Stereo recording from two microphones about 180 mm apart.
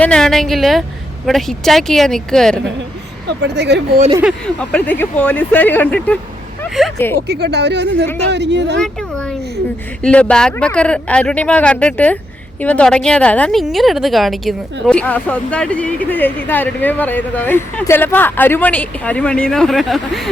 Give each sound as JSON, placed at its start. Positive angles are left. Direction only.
{"t": 0.0, "sound": "speech", "side_deg": 5}
{"t": 3.2, "sound": "speech", "side_deg": -70}
{"t": 4.2, "sound": "speech", "side_deg": 0}
{"t": 7.3, "sound": "speech", "side_deg": -65}
{"t": 8.8, "sound": "a sound", "side_deg": 5}
{"t": 10.0, "sound": "speech", "side_deg": 5}